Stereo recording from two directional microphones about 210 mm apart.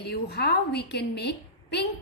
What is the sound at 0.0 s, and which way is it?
A woman's voice, 50° left (ahead or behind).